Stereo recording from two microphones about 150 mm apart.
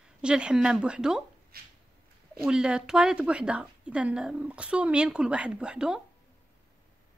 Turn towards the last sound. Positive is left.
turn(degrees=-5)  # may be behind; listen again after turning